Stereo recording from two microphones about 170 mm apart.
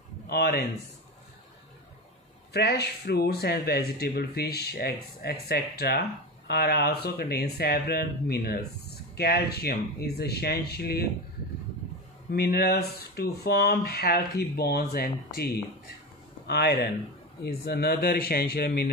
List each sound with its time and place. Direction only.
0.3 s speech: 65° left (ahead or behind)
2.5 s speech: 70° left (ahead or behind)
12.3 s speech: 65° left (ahead or behind)